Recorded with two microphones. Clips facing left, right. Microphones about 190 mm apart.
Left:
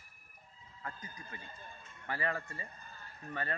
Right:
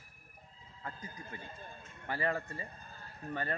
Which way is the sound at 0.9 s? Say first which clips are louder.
Right 3 dB; 30° right (ahead or behind).